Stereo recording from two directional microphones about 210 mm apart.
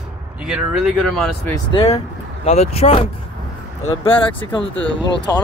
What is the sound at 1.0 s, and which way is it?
Speech, centre (ahead or behind).